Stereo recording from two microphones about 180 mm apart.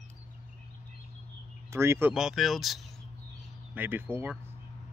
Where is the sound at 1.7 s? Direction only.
15° right (ahead or behind).